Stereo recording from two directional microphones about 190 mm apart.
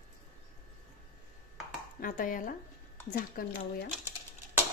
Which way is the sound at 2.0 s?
45° left (ahead or behind).